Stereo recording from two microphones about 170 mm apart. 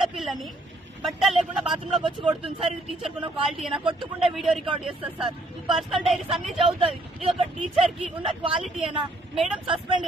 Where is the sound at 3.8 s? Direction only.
30° right (ahead or behind).